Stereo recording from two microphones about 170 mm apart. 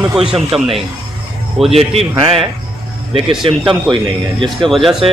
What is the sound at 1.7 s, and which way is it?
A man's voice, 35° right (ahead or behind).